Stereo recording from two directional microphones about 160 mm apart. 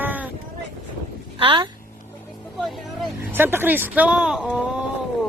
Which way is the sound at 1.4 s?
30° right (ahead or behind).